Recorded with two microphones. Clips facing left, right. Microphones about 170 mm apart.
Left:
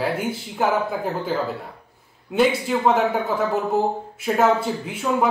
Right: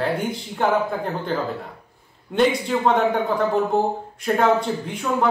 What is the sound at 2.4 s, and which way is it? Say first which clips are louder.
A man's voice: even; 5° left (ahead or behind).